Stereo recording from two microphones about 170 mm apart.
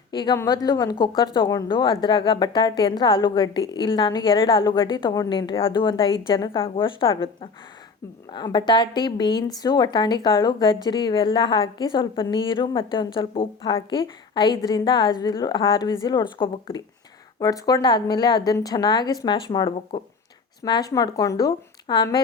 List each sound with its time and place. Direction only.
0.1 s a woman's voice: 25° left (ahead or behind)
8.3 s speech: 25° left (ahead or behind)